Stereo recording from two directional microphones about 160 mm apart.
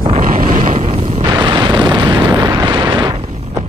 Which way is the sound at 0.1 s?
55° right (ahead or behind).